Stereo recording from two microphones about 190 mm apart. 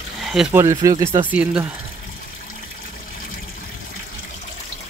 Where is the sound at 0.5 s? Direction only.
15° right (ahead or behind).